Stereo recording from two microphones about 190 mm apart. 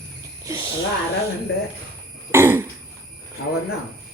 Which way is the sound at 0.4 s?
15° right (ahead or behind).